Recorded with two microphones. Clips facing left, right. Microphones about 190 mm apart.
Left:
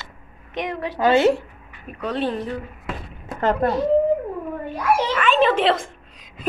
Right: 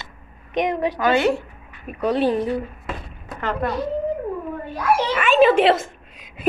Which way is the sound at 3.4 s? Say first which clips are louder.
Left 4 dB; 40° left (ahead or behind).